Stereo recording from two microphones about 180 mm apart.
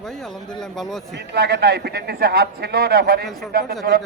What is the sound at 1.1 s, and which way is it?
A man's voice, 65° right (ahead or behind).